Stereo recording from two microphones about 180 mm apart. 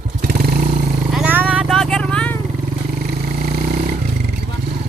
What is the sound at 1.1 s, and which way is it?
Vehicle, 10° right (ahead or behind).